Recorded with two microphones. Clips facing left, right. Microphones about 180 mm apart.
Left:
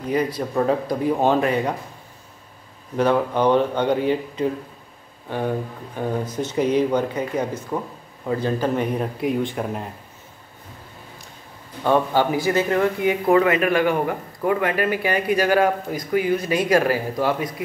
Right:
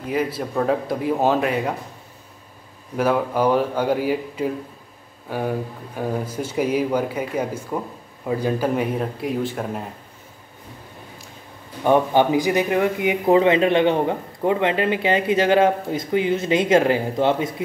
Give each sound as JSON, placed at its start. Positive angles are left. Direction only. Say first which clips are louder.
{"t": 0.0, "sound": "speech", "louder": "left 1 dB", "side_deg": -5}
{"t": 3.0, "sound": "speech", "louder": "left 1 dB", "side_deg": -5}
{"t": 11.8, "sound": "speech", "louder": "right 2 dB", "side_deg": -15}